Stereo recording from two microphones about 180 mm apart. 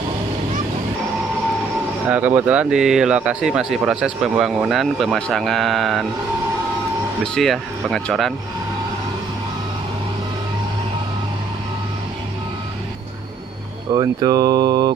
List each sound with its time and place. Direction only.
2.0 s speech: 10° right (ahead or behind)
7.3 s speech: centre (ahead or behind)
13.9 s speech: 20° right (ahead or behind)